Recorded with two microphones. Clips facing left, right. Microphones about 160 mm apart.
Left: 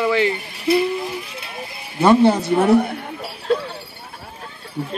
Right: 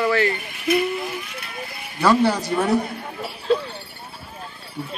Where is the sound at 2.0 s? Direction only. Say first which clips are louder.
Left 4 dB; 20° left (ahead or behind).